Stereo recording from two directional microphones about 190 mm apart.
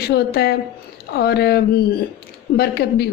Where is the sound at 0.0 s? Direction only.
55° left (ahead or behind).